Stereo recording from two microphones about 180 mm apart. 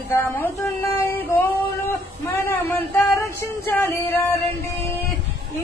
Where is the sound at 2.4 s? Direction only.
10° left (ahead or behind).